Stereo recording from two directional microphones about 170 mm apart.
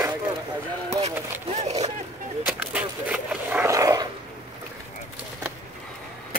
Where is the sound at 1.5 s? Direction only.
40° right (ahead or behind).